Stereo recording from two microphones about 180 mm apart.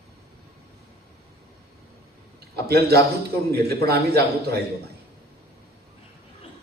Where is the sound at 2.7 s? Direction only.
60° right (ahead or behind).